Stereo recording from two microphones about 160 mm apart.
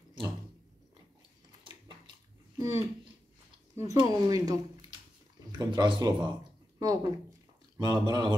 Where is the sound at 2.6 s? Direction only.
20° right (ahead or behind).